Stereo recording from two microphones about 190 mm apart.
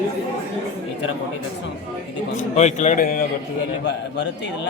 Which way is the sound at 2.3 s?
40° left (ahead or behind).